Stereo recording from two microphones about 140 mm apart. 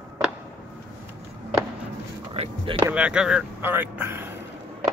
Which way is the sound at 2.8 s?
15° right (ahead or behind).